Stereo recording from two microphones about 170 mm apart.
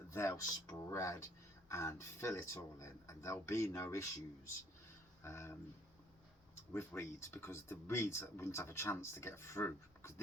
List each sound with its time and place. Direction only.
0.1 s speech: 15° left (ahead or behind)
5.2 s speech: 15° left (ahead or behind)
6.7 s speech: 15° left (ahead or behind)